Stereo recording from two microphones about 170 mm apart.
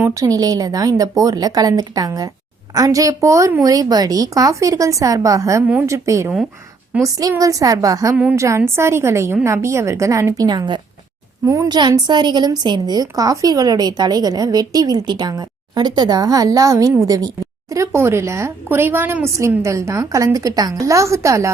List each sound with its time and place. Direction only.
0.0 s a woman's voice: 20° right (ahead or behind)
8.1 s a woman's voice: 5° right (ahead or behind)